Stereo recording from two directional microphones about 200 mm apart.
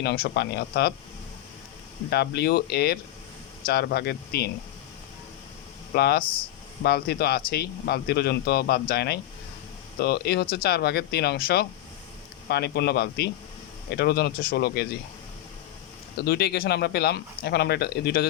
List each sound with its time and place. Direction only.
0.0 s speech: 55° left (ahead or behind)
2.0 s speech: 55° left (ahead or behind)
5.9 s speech: 50° left (ahead or behind)
16.1 s speech: 55° left (ahead or behind)